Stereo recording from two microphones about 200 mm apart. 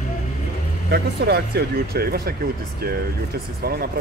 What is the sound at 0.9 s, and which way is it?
Speech, 50° right (ahead or behind).